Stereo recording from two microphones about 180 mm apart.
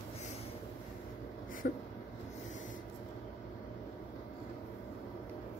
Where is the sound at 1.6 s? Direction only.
65° left (ahead or behind).